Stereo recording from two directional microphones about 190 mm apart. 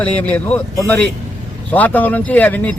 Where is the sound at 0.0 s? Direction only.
10° left (ahead or behind).